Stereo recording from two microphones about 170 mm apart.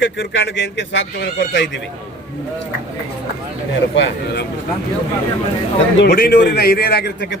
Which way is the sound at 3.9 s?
90° left.